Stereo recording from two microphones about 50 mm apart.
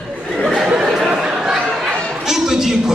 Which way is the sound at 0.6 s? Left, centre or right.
Centre.